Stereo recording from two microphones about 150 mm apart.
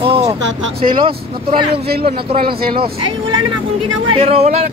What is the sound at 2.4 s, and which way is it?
Speech, 85° right.